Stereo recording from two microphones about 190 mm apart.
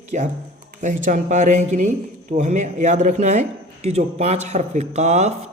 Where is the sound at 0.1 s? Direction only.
40° right (ahead or behind).